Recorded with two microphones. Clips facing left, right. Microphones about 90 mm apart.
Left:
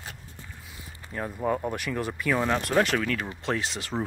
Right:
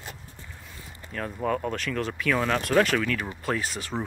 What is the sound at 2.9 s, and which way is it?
Speech, 30° left (ahead or behind).